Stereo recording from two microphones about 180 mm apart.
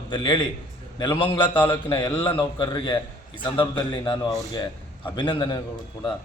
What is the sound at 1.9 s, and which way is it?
A man's voice, 25° left (ahead or behind).